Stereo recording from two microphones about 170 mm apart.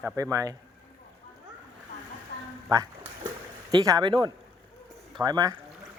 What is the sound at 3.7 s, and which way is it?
Speech, 20° right (ahead or behind).